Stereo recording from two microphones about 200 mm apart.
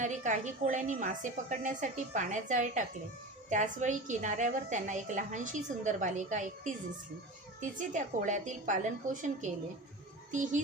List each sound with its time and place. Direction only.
0.0 s a woman's voice: 40° right (ahead or behind)